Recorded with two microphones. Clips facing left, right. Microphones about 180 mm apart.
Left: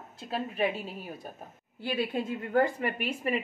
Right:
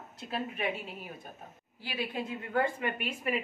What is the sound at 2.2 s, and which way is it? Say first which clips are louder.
A woman's voice: left 4 dB; 40° left (ahead or behind).